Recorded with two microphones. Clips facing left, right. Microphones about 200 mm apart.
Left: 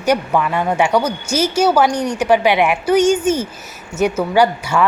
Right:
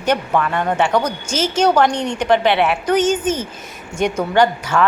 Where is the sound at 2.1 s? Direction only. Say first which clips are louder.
Left 2 dB; 10° left (ahead or behind).